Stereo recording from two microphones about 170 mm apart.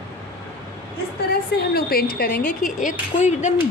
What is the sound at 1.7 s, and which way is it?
A woman's voice, 65° left (ahead or behind).